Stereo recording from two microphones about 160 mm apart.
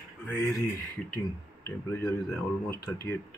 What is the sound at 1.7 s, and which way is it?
Speech, 15° left (ahead or behind).